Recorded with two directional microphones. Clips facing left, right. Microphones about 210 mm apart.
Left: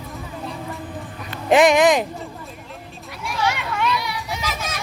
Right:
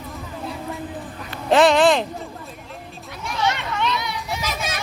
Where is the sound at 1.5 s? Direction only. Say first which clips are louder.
Left 1 dB; 15° left (ahead or behind).